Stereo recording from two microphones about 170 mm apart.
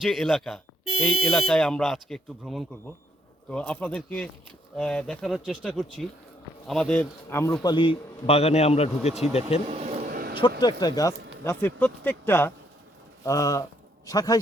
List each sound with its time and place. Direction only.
0.0 s speech: centre (ahead or behind)
7.6 s a man's voice: 25° left (ahead or behind)
9.6 s vehicle: 40° right (ahead or behind)
10.1 s vehicle: 65° right (ahead or behind)
10.6 s speech: 25° left (ahead or behind)
11.4 s speech: 10° left (ahead or behind)